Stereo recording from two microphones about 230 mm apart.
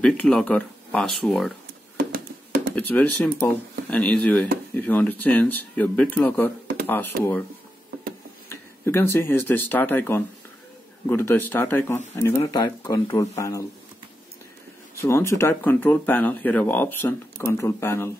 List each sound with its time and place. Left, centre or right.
0.0 s speech: centre
2.1 s hands: right
2.7 s speech: centre
7.1 s speech: right
8.5 s speech: centre
15.0 s speech: centre